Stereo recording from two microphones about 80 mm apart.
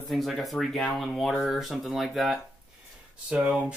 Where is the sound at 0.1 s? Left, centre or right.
Centre.